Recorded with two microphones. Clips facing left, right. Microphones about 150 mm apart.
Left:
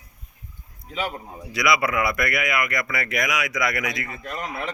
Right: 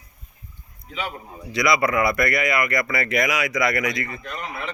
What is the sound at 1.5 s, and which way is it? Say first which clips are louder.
Speech: right 2 dB; centre (ahead or behind).